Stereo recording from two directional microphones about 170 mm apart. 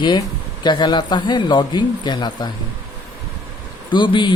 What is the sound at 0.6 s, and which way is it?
Speech, 25° left (ahead or behind).